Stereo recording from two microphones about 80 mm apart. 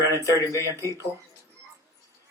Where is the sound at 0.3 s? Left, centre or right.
Left.